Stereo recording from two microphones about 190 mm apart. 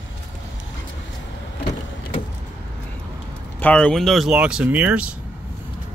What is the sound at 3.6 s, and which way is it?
Speech, 5° left (ahead or behind).